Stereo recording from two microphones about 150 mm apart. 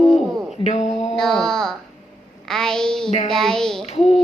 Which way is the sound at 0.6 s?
50° left (ahead or behind).